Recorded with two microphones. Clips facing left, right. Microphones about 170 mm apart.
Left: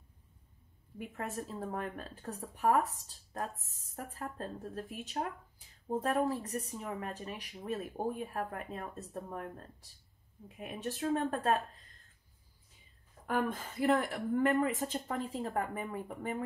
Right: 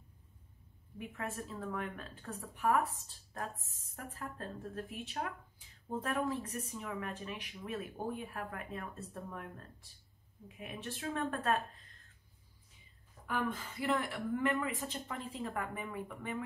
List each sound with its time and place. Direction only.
1.1 s speech: 35° left (ahead or behind)
13.3 s speech: 45° left (ahead or behind)